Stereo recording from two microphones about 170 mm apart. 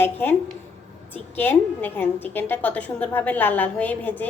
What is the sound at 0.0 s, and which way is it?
A woman's voice, 10° left (ahead or behind).